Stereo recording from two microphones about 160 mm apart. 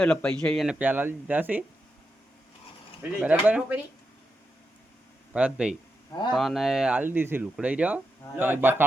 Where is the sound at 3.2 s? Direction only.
10° right (ahead or behind).